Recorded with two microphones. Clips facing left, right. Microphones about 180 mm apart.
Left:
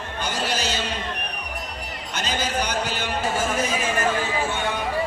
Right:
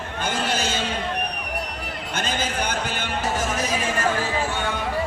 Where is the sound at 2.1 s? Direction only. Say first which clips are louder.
Left 1 dB; 50° right (ahead or behind).